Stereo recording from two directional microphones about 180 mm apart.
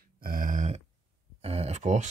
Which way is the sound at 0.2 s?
50° right (ahead or behind).